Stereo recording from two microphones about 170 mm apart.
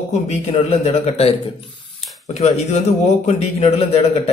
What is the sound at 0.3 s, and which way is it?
Speech, 35° left (ahead or behind).